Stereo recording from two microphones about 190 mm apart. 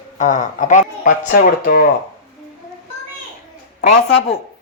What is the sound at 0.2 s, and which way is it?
A woman's voice, 40° left (ahead or behind).